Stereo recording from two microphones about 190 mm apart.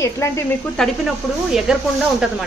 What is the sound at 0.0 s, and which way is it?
Speech, 15° left (ahead or behind).